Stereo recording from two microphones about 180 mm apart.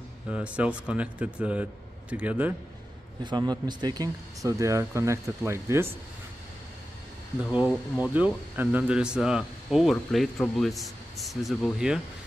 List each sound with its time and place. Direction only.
0.3 s speech: 5° right (ahead or behind)
3.3 s speech: 25° right (ahead or behind)
7.5 s speech: 5° right (ahead or behind)